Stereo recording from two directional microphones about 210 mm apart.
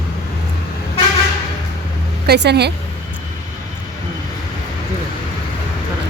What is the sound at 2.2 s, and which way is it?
Speech, 55° right (ahead or behind).